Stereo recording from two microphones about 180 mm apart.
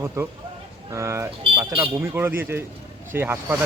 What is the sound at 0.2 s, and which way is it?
A man's voice, 15° right (ahead or behind).